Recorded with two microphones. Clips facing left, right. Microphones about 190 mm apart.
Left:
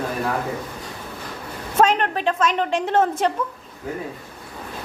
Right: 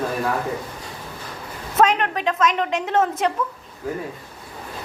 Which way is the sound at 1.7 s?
30° left (ahead or behind).